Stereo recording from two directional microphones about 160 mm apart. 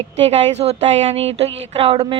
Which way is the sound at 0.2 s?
40° right (ahead or behind).